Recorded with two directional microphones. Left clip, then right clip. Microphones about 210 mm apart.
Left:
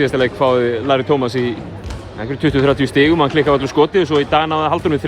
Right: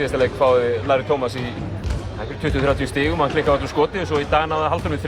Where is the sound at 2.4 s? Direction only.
40° left (ahead or behind).